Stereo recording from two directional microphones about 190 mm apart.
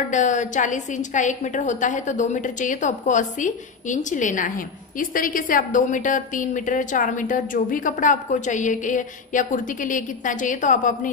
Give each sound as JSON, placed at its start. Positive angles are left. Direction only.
{"t": 0.1, "sound": "a woman's voice", "side_deg": 40}